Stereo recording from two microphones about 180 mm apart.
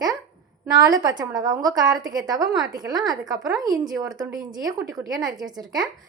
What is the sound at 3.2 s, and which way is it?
Speech, centre (ahead or behind).